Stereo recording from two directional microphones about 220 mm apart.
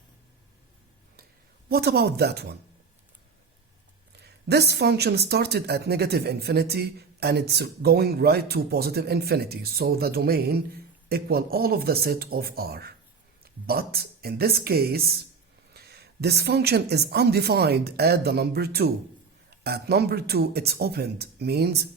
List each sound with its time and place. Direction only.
1.7 s speech: 45° right (ahead or behind)
4.1 s speech: 50° right (ahead or behind)